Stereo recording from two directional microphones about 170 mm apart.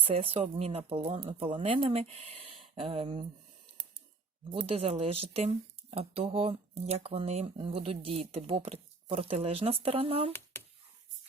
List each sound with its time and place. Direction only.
0.0 s speech: 35° right (ahead or behind)
4.6 s speech: 35° right (ahead or behind)